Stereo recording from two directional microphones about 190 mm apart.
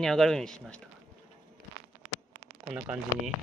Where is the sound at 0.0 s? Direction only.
Centre (ahead or behind).